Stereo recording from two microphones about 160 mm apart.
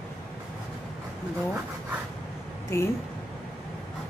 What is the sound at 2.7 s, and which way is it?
Speech, 15° left (ahead or behind).